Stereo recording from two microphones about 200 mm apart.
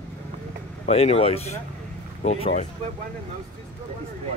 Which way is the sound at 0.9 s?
30° left (ahead or behind).